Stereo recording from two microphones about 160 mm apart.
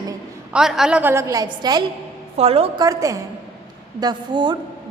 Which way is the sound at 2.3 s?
35° right (ahead or behind).